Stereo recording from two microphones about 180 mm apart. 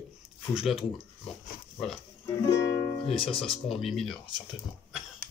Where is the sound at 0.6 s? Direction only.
Centre (ahead or behind).